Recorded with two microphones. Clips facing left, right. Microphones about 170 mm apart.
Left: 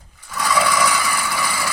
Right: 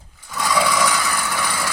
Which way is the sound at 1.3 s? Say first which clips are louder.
Even; 5° left (ahead or behind).